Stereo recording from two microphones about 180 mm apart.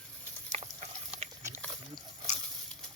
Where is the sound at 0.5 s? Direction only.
40° right (ahead or behind).